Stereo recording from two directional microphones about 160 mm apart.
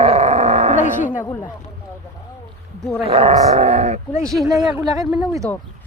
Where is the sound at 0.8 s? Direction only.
55° left (ahead or behind).